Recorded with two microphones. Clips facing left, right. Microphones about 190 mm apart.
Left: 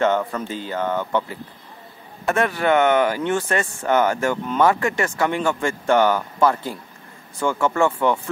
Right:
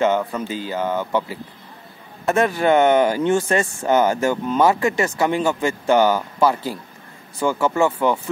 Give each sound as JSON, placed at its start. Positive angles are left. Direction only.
{"t": 0.0, "sound": "speech", "side_deg": -5}
{"t": 2.2, "sound": "speech", "side_deg": -20}
{"t": 5.1, "sound": "speech", "side_deg": -10}